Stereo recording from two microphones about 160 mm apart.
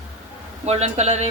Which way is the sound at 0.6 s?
45° right (ahead or behind).